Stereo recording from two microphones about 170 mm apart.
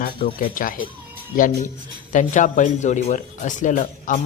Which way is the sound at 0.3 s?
55° left (ahead or behind).